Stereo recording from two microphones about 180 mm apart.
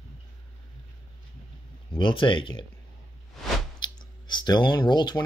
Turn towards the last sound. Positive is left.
turn(degrees=25)  # may be behind; listen again after turning